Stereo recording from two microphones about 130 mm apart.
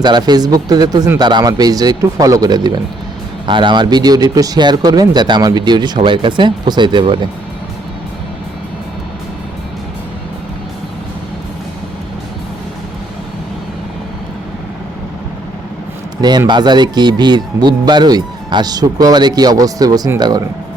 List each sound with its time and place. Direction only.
0.0 s speech: 35° right (ahead or behind)
16.5 s speech: 35° right (ahead or behind)